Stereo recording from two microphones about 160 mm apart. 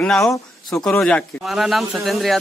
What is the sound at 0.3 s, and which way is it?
Speech, 25° left (ahead or behind).